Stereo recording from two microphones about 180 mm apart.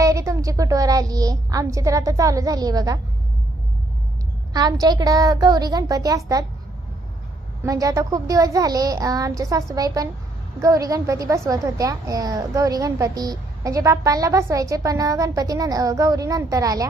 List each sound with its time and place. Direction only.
0.0 s a woman's voice: 20° right (ahead or behind)
4.5 s a woman's voice: 20° right (ahead or behind)
7.6 s a woman's voice: 20° right (ahead or behind)